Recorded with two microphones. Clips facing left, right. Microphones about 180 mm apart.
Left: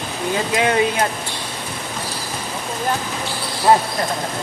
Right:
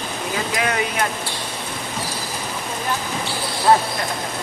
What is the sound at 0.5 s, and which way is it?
Speech, 25° left (ahead or behind).